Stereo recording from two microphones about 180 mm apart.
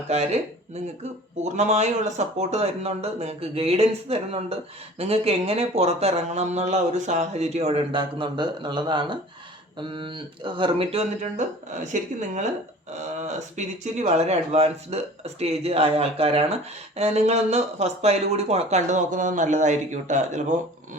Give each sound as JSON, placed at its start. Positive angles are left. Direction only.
{"t": 1.5, "sound": "speech", "side_deg": -40}
{"t": 13.6, "sound": "speech", "side_deg": -40}